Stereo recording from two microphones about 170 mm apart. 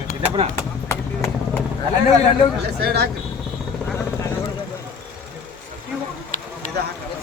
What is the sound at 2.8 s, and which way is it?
Speech, 75° right (ahead or behind).